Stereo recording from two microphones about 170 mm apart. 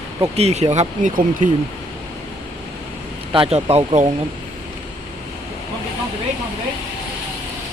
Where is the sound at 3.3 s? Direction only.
35° right (ahead or behind).